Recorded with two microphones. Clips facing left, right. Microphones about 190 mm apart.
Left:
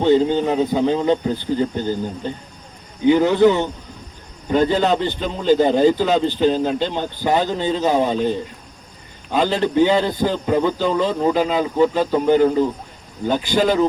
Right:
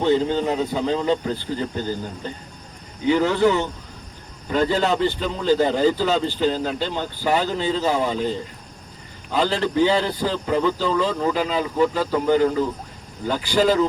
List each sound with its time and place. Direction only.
0.0 s a man's voice: 15° left (ahead or behind)